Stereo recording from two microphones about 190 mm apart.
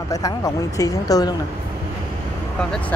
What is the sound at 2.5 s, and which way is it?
Speech, 5° left (ahead or behind).